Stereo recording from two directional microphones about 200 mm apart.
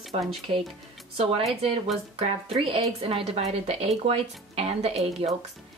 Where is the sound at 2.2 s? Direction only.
30° right (ahead or behind).